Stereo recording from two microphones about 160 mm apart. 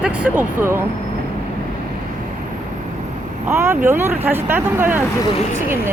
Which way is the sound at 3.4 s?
15° right (ahead or behind).